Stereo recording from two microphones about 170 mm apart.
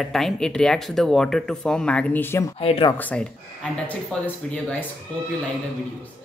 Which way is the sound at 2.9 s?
10° left (ahead or behind).